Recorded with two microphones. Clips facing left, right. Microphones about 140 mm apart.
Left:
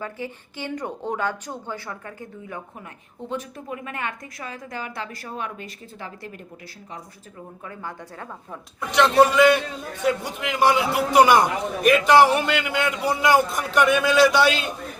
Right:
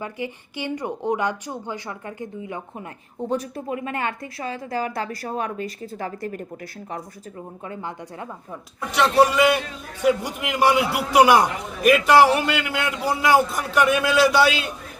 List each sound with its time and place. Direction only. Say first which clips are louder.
0.0 s speech: right 2 dB; 15° right (ahead or behind)
3.2 s a woman's voice: right 5 dB; 40° right (ahead or behind)
7.6 s speech: right 3 dB; 20° right (ahead or behind)
8.9 s a man's voice: left 1 dB; 5° right (ahead or behind)